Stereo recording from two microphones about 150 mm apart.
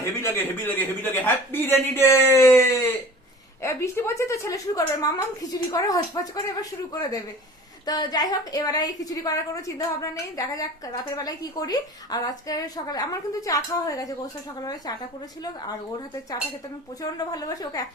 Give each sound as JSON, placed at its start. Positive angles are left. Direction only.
{"t": 0.0, "sound": "a woman's voice", "side_deg": 15}